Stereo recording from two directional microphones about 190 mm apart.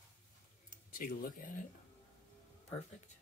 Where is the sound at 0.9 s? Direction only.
50° left (ahead or behind).